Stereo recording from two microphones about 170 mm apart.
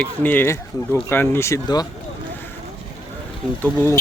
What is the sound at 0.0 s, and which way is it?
Speech, 10° left (ahead or behind).